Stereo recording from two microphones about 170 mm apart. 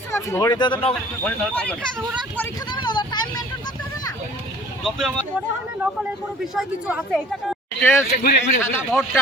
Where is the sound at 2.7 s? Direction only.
25° left (ahead or behind).